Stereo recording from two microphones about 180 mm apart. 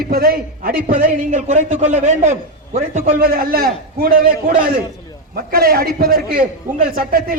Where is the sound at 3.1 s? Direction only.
55° right (ahead or behind).